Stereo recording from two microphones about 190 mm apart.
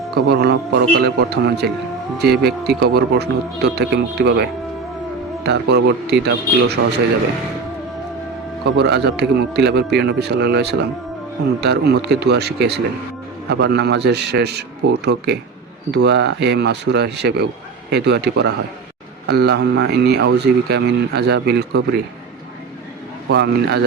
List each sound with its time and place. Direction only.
0.1 s speech: 60° right (ahead or behind)
8.6 s speech: 60° right (ahead or behind)
23.3 s speech: 60° right (ahead or behind)